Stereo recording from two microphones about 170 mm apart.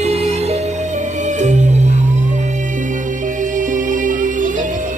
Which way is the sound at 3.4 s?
50° right (ahead or behind).